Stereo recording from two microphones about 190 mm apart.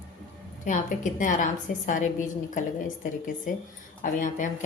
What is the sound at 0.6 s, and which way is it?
A woman's voice, 40° left (ahead or behind).